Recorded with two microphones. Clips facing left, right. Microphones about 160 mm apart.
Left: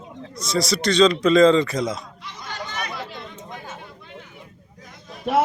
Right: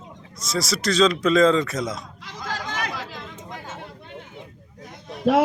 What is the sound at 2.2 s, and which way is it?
Chatter, 90° right.